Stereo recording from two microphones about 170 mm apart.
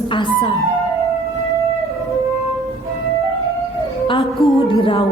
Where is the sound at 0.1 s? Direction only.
30° left (ahead or behind).